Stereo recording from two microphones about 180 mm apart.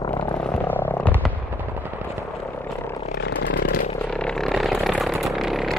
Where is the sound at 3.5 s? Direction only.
55° left (ahead or behind).